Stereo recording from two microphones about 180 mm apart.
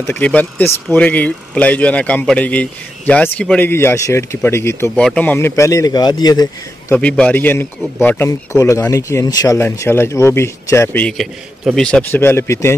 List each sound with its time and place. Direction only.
0.0 s a man's voice: 10° left (ahead or behind)
7.0 s a man's voice: 5° left (ahead or behind)